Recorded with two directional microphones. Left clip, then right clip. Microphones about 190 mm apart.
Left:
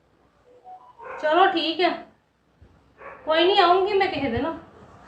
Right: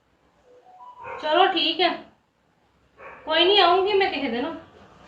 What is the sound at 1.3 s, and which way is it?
Speech, 5° left (ahead or behind).